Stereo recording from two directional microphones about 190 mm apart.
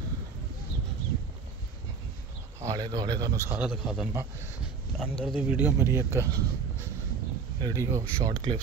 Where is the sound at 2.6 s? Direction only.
20° right (ahead or behind).